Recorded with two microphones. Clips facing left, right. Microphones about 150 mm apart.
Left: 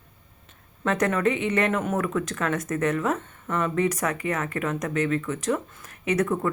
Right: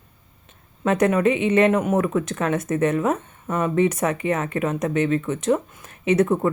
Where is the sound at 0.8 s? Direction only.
20° right (ahead or behind).